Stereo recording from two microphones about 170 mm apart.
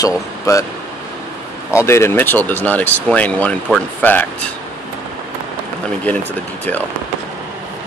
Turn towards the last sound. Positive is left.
turn(degrees=10)  # may be behind; listen again after turning